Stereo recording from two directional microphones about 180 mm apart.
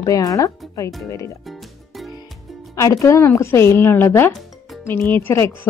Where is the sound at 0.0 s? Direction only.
20° left (ahead or behind).